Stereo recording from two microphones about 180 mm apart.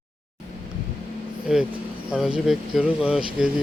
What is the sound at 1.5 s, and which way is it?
A man's voice, 5° right (ahead or behind).